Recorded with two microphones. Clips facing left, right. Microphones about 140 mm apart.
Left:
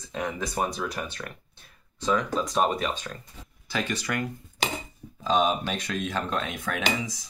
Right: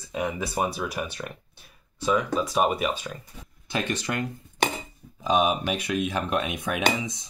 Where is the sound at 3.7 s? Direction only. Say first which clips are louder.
Right 1 dB; 20° right (ahead or behind).